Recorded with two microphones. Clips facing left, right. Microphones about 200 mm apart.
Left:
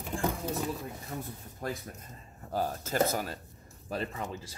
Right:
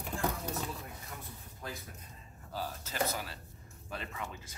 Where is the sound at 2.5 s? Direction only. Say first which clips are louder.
Left 8 dB; 50° left (ahead or behind).